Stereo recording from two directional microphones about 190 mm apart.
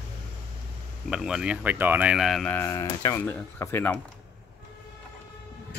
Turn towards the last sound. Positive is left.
turn(degrees=10)  # may be behind; listen again after turning